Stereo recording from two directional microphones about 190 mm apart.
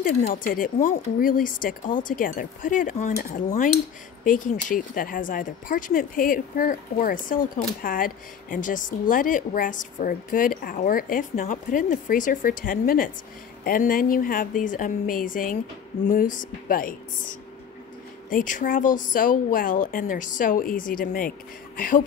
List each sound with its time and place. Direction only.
0.0 s speech: 45° left (ahead or behind)